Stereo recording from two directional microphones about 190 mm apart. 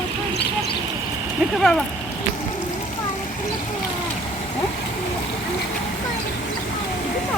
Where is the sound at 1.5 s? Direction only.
Centre (ahead or behind).